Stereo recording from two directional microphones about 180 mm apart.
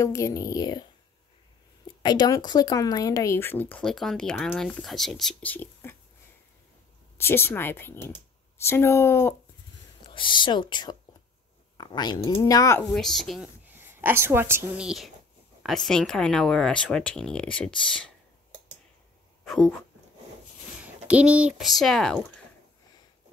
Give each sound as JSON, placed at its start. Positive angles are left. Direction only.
{"t": 0.0, "sound": "speech", "side_deg": 15}
{"t": 2.0, "sound": "speech", "side_deg": 20}
{"t": 7.2, "sound": "speech", "side_deg": 15}
{"t": 10.0, "sound": "speech", "side_deg": 25}
{"t": 12.4, "sound": "speech", "side_deg": 20}
{"t": 12.9, "sound": "speech", "side_deg": 0}
{"t": 13.7, "sound": "speech", "side_deg": -10}
{"t": 19.4, "sound": "speech", "side_deg": 0}
{"t": 20.8, "sound": "speech", "side_deg": -5}